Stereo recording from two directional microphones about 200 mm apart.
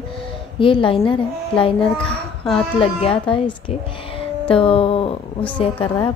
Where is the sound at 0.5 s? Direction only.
25° left (ahead or behind).